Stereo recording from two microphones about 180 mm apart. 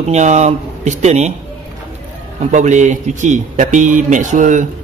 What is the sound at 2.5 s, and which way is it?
Speech, 40° right (ahead or behind).